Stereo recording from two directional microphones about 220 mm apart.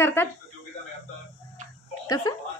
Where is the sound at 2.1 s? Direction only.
15° left (ahead or behind).